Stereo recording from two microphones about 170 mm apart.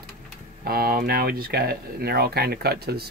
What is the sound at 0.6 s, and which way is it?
Speech, 60° right (ahead or behind).